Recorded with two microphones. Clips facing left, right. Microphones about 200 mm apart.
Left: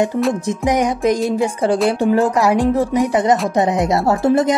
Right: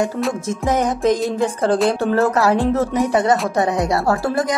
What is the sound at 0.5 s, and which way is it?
A woman's voice, 15° left (ahead or behind).